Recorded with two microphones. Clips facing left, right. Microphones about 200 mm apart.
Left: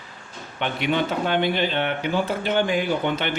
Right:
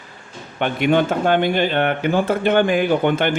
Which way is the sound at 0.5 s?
50° right (ahead or behind).